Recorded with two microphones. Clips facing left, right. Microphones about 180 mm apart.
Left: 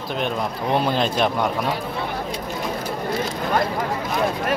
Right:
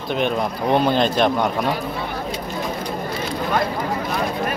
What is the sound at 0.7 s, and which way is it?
Speech, 5° left (ahead or behind).